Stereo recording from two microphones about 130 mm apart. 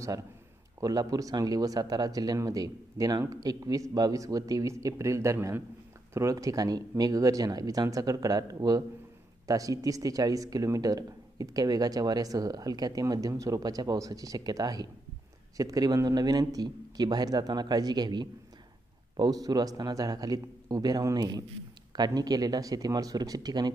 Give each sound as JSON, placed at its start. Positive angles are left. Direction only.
{"t": 0.7, "sound": "a man's voice", "side_deg": -30}